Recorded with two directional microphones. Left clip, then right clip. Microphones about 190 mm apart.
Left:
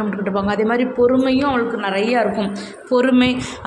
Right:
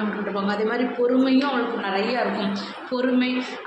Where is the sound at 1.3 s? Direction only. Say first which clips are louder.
Left 4 dB; 55° left (ahead or behind).